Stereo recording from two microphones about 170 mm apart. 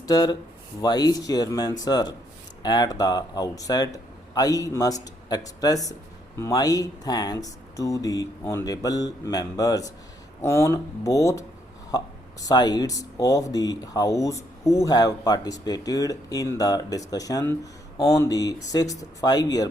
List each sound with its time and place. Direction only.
0.1 s speech: 20° left (ahead or behind)